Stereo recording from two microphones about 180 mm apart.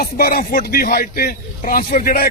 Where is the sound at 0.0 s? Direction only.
55° left (ahead or behind).